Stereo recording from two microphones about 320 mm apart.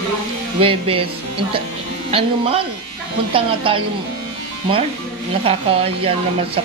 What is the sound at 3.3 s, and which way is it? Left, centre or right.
Speech, centre.